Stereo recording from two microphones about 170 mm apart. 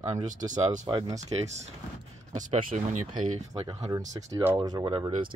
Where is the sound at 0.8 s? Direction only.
25° right (ahead or behind).